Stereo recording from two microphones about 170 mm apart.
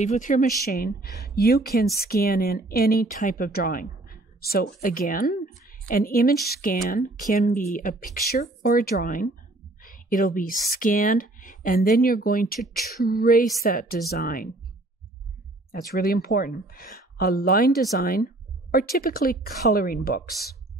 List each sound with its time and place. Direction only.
0.0 s speech: 45° left (ahead or behind); by 4.6 s 65° left (ahead or behind)
4.6 s speech: 50° left (ahead or behind)
15.7 s speech: 60° left (ahead or behind)